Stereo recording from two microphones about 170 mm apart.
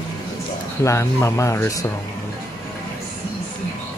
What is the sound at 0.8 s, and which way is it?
Speech, 15° left (ahead or behind).